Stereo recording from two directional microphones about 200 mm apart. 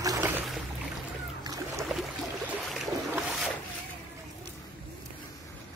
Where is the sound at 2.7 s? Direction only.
Centre (ahead or behind).